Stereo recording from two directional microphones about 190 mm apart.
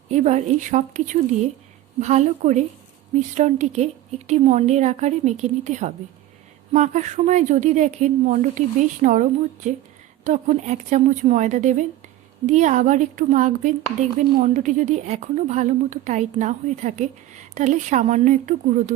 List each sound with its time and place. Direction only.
0.1 s a woman's voice: 35° right (ahead or behind)
10.2 s a woman's voice: 35° right (ahead or behind)